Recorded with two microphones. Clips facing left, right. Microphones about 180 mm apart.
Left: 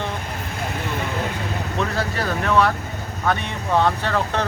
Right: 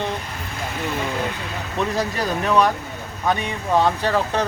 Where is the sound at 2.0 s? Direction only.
15° right (ahead or behind).